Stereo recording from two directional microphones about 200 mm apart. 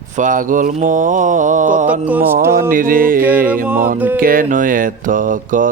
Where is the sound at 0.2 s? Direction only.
40° right (ahead or behind).